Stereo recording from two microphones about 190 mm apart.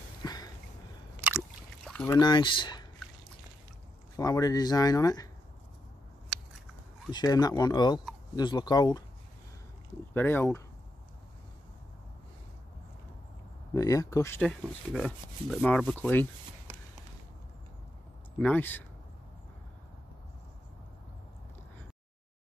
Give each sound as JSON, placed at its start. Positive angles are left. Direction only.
{"t": 0.2, "sound": "a sound", "side_deg": 20}
{"t": 1.9, "sound": "boat", "side_deg": 5}
{"t": 2.1, "sound": "speech", "side_deg": 25}
{"t": 4.2, "sound": "speech", "side_deg": 20}
{"t": 7.1, "sound": "speech", "side_deg": 20}
{"t": 10.1, "sound": "speech", "side_deg": 10}
{"t": 13.7, "sound": "speech", "side_deg": 15}
{"t": 14.9, "sound": "rub", "side_deg": 0}
{"t": 18.4, "sound": "speech", "side_deg": 10}